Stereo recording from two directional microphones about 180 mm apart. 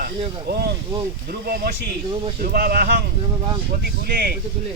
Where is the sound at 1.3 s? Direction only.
55° right (ahead or behind).